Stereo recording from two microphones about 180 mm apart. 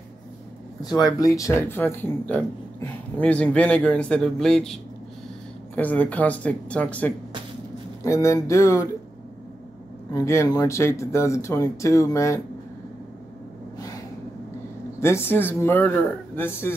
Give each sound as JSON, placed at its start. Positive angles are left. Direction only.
{"t": 0.8, "sound": "speech", "side_deg": 20}
{"t": 5.8, "sound": "speech", "side_deg": 10}
{"t": 10.1, "sound": "speech", "side_deg": 15}
{"t": 13.7, "sound": "a sound", "side_deg": 20}
{"t": 15.0, "sound": "speech", "side_deg": 15}